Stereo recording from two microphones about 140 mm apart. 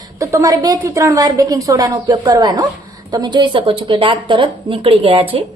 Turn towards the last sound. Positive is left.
turn(degrees=-40)  # may be behind; listen again after turning